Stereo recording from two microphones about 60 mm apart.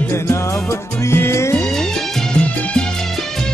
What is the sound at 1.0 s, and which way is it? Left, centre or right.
Music, left.